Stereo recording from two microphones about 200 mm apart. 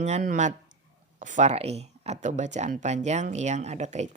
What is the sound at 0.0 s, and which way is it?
Speech, 40° right (ahead or behind).